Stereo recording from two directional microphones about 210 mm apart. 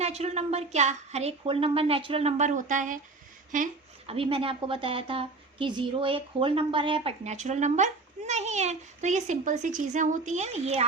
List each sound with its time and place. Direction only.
0.0 s a child's voice: 30° right (ahead or behind)